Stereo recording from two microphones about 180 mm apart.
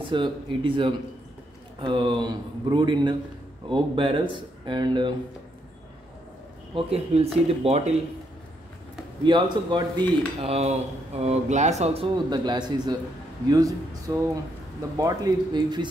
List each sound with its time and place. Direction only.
0.0 s speech: 25° right (ahead or behind)
6.7 s speech: 35° right (ahead or behind)
9.2 s speech: 25° right (ahead or behind)